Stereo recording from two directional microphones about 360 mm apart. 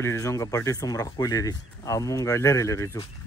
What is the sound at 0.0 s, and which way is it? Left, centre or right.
Speech, centre.